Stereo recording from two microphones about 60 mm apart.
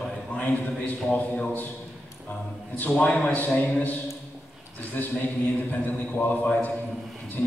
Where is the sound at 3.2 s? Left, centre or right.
Left.